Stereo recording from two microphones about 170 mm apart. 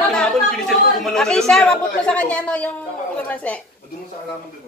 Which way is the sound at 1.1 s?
5° left (ahead or behind).